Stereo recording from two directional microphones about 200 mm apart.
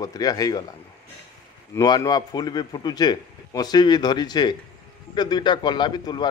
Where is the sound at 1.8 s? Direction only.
20° left (ahead or behind).